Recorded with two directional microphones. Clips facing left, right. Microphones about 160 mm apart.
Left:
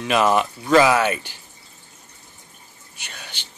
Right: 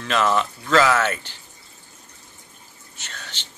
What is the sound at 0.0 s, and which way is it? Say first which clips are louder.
Speech: left 3 dB; 15° left (ahead or behind).